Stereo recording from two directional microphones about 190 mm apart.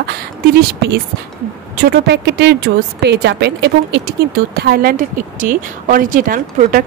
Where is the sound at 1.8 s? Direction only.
60° right (ahead or behind).